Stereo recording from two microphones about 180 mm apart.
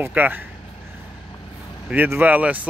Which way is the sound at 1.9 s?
10° right (ahead or behind).